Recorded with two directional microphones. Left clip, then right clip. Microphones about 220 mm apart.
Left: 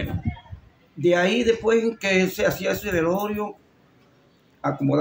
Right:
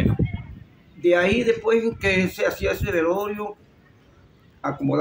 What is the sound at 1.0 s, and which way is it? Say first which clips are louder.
Speech: right 1 dB; 5° right (ahead or behind).